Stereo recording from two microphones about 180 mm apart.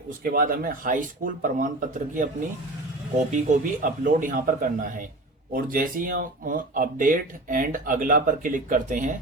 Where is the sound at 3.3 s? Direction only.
45° right (ahead or behind).